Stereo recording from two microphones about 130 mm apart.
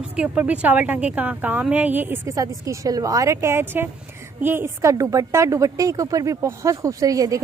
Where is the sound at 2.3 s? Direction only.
25° right (ahead or behind).